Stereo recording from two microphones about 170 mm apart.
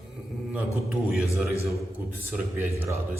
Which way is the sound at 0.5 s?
Centre (ahead or behind).